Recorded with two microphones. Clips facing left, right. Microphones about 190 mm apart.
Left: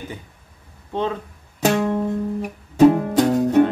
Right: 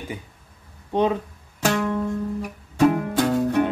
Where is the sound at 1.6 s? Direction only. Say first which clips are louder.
Left 3 dB; 20° left (ahead or behind).